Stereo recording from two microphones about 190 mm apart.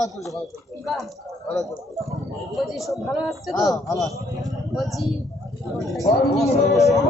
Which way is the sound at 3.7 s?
15° left (ahead or behind).